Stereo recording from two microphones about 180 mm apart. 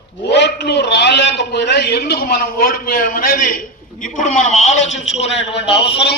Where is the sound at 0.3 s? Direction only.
70° left (ahead or behind); by 5.7 s 35° left (ahead or behind).